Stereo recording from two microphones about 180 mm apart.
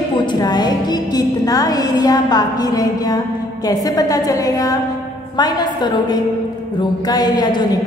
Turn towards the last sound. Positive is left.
turn(degrees=25)  # may be behind; listen again after turning